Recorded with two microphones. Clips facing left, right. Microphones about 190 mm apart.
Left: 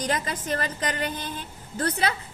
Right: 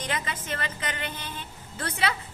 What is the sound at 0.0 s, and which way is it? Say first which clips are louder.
A woman's voice: left 5 dB; 40° left (ahead or behind).